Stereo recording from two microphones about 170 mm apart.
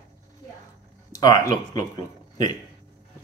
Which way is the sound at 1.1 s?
20° left (ahead or behind).